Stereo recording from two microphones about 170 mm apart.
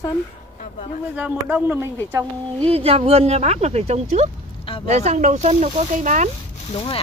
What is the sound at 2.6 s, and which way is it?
Speech, 35° right (ahead or behind).